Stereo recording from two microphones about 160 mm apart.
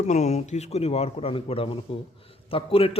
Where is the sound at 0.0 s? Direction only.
45° left (ahead or behind).